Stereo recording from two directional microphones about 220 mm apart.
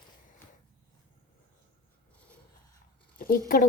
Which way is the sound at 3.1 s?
40° left (ahead or behind).